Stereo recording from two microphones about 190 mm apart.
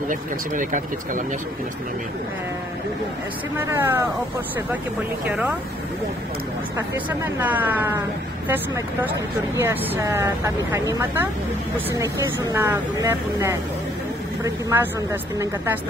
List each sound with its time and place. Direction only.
0.1 s speech: 45° right (ahead or behind)
3.5 s speech: 10° right (ahead or behind)
7.1 s speech: 10° right (ahead or behind)